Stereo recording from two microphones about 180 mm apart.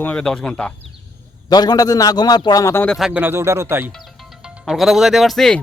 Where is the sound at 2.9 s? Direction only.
5° right (ahead or behind).